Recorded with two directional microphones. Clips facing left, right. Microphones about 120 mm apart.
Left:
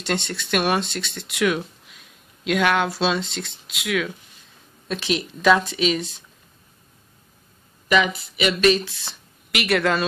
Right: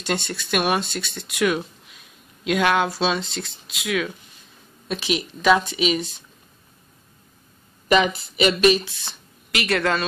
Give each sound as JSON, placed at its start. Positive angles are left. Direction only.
{"t": 0.0, "sound": "speech", "side_deg": -5}
{"t": 7.9, "sound": "speech", "side_deg": -30}
{"t": 8.5, "sound": "speech", "side_deg": -15}
{"t": 8.8, "sound": "speech", "side_deg": 0}